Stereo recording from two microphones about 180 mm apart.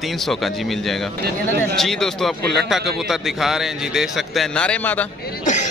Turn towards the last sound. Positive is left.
turn(degrees=40)  # may be behind; listen again after turning